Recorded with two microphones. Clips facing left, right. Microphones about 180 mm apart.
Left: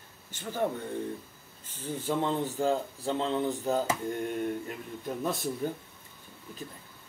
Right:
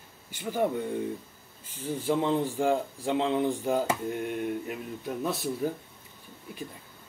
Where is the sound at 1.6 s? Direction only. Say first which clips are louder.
Right 4 dB; 10° right (ahead or behind).